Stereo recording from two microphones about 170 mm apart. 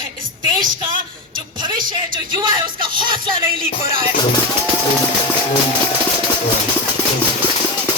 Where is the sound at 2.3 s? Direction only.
25° right (ahead or behind).